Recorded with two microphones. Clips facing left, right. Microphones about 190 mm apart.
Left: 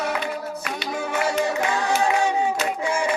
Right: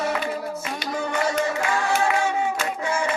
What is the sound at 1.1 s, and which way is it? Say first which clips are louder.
Music: left 1 dB; 15° left (ahead or behind).